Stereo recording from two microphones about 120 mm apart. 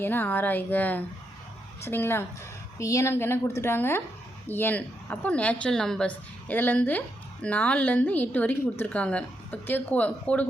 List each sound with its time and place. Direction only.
0.0 s a woman's voice: 15° left (ahead or behind)